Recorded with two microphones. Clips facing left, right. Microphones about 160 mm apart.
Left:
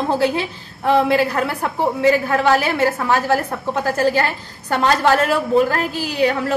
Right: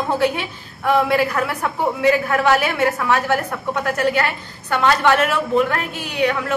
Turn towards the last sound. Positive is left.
turn(degrees=30)  # may be behind; listen again after turning